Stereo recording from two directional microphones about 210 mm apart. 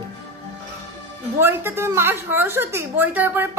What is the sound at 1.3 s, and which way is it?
A woman's voice, 10° right (ahead or behind).